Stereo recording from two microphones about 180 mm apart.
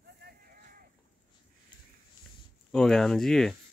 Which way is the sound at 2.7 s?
5° left (ahead or behind).